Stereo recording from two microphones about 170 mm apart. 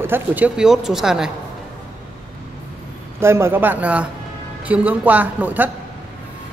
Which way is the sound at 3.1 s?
15° right (ahead or behind).